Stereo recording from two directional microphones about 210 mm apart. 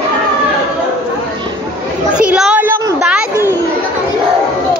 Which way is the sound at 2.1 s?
5° right (ahead or behind).